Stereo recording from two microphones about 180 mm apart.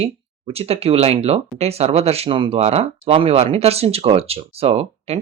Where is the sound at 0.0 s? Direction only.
35° right (ahead or behind).